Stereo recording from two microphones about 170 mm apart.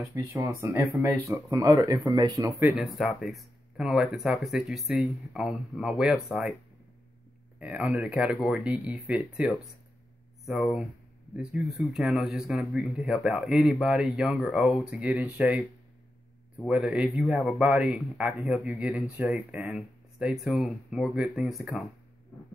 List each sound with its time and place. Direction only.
0.1 s speech: 20° right (ahead or behind)
2.7 s speech: centre (ahead or behind)
7.5 s speech: 10° right (ahead or behind)
16.6 s speech: 5° right (ahead or behind)